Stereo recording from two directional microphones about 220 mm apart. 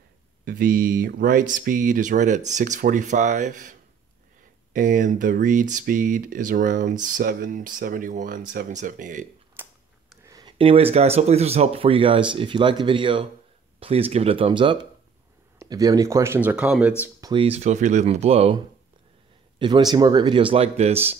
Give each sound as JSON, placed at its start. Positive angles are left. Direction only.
{"t": 0.5, "sound": "speech", "side_deg": -40}
{"t": 4.7, "sound": "speech", "side_deg": -35}
{"t": 9.6, "sound": "a sound", "side_deg": -10}
{"t": 10.2, "sound": "speech", "side_deg": -15}
{"t": 17.3, "sound": "speech", "side_deg": -25}
{"t": 19.6, "sound": "speech", "side_deg": -20}